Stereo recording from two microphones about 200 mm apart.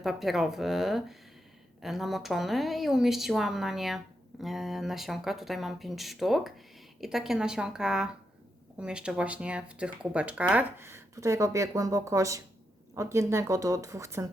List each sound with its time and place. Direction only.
0.0 s speech: centre (ahead or behind)